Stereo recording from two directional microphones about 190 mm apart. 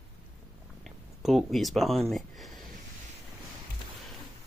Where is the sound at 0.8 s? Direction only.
Centre (ahead or behind).